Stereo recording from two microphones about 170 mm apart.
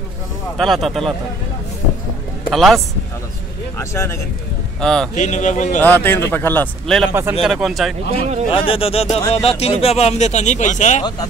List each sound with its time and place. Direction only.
0.6 s speech: centre (ahead or behind)
2.5 s speech: centre (ahead or behind)
3.7 s speech: 15° left (ahead or behind)
4.7 s speech: 5° left (ahead or behind)
5.1 s a man's voice: 45° left (ahead or behind)
5.8 s speech: 10° left (ahead or behind)
8.1 s speech: 40° right (ahead or behind)
8.5 s speech: 35° left (ahead or behind)